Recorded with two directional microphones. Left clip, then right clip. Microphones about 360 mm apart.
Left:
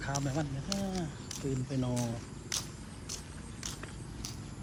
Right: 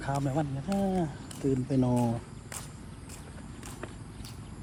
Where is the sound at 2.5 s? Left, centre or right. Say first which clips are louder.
Left 7 dB; centre.